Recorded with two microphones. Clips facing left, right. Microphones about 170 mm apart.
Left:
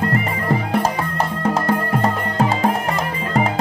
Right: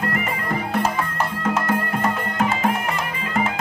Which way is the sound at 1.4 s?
30° left (ahead or behind).